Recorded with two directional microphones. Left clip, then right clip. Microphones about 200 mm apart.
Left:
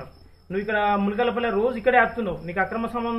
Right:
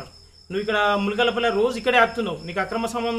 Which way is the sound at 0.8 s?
35° right (ahead or behind).